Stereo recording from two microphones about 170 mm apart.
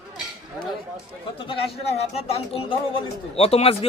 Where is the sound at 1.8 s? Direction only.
40° left (ahead or behind).